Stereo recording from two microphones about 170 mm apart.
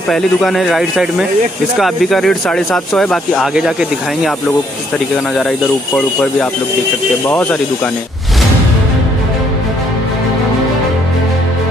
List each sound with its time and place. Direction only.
0.1 s speech: centre (ahead or behind)
7.2 s speech: 5° left (ahead or behind)